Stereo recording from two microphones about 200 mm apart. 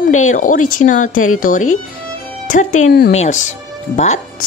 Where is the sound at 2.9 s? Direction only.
50° left (ahead or behind).